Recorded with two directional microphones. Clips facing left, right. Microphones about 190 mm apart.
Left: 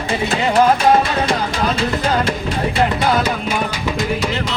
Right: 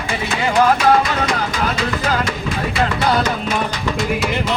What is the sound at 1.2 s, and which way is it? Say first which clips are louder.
Music: left 2 dB; 30° left (ahead or behind).